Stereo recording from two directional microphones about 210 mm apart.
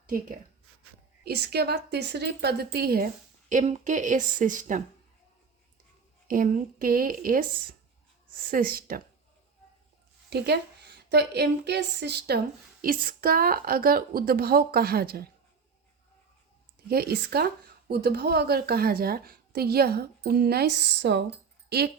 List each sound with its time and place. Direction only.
1.2 s speech: 50° right (ahead or behind)
3.5 s speech: 35° right (ahead or behind)
6.2 s speech: 40° right (ahead or behind)
8.4 s speech: 45° right (ahead or behind)
10.2 s a woman's voice: 50° right (ahead or behind)
16.9 s speech: 45° right (ahead or behind)